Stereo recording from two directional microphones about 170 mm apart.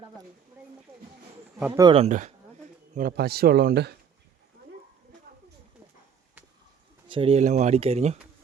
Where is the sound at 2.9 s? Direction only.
60° right (ahead or behind).